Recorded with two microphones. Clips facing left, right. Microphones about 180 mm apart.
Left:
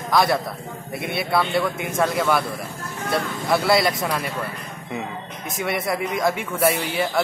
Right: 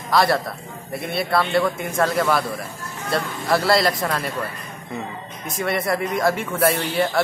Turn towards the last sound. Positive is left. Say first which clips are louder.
# right 1 dB
turn(degrees=5)  # may be behind; listen again after turning